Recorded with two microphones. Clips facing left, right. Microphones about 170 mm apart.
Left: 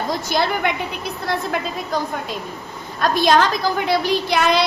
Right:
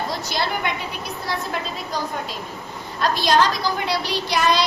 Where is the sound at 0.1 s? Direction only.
50° left (ahead or behind).